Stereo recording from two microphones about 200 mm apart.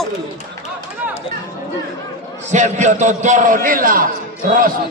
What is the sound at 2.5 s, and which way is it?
A man's voice, 35° right (ahead or behind).